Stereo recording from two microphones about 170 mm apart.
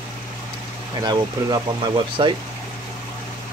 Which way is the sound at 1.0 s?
25° right (ahead or behind).